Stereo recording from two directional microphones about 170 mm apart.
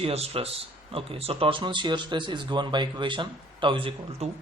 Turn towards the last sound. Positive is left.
turn(degrees=-30)  # may be behind; listen again after turning